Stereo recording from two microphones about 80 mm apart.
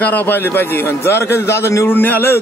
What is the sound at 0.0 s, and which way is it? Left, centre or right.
A man's voice, left.